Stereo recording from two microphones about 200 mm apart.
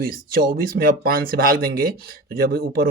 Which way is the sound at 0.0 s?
50° right (ahead or behind).